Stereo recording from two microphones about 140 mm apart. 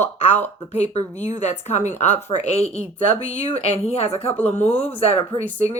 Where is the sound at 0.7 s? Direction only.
50° left (ahead or behind).